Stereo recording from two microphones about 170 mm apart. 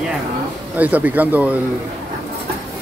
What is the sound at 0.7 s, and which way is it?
Speech, 10° right (ahead or behind).